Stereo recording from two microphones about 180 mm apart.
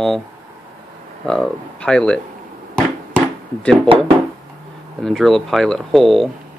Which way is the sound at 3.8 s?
25° right (ahead or behind).